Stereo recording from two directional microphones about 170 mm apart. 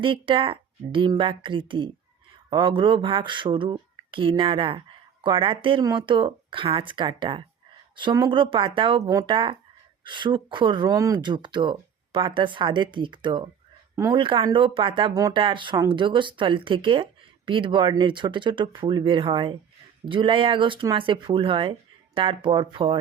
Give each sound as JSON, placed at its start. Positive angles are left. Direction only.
{"t": 0.0, "sound": "speech", "side_deg": -30}